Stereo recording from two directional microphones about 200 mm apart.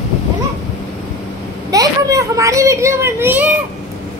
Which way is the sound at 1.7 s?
15° right (ahead or behind).